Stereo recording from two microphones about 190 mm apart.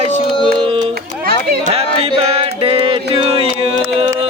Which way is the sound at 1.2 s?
55° right (ahead or behind).